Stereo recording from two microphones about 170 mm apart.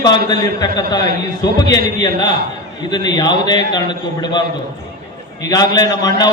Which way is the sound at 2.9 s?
25° left (ahead or behind).